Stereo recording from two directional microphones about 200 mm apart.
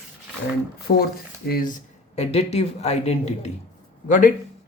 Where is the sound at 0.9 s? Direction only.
45° left (ahead or behind).